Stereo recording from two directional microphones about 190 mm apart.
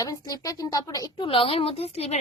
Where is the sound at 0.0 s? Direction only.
20° left (ahead or behind).